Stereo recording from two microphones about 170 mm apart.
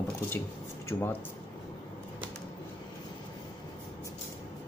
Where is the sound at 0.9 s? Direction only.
20° left (ahead or behind).